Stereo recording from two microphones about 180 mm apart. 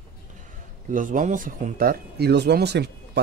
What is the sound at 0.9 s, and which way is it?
Speech, 45° right (ahead or behind).